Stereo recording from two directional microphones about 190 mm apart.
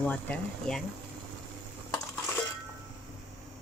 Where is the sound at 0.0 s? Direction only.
5° left (ahead or behind).